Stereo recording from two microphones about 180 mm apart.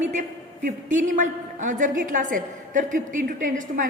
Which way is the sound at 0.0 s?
40° right (ahead or behind).